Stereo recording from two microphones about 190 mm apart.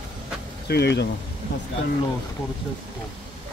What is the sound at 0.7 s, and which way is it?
Speech, 60° left (ahead or behind).